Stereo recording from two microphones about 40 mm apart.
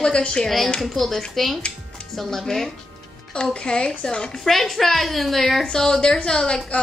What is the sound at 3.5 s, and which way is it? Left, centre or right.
Speech, left.